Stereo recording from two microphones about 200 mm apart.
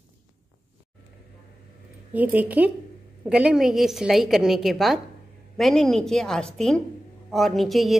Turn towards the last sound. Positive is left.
turn(degrees=0)  # may be behind; listen again after turning